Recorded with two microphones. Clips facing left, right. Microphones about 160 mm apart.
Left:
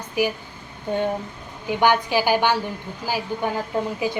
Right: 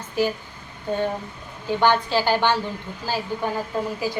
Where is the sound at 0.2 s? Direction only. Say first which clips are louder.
Even; 15° left (ahead or behind).